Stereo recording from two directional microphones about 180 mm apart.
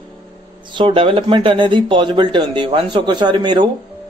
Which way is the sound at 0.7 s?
30° right (ahead or behind).